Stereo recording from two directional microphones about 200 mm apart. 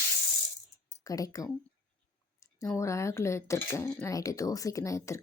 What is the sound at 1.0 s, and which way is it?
Speech, 15° left (ahead or behind).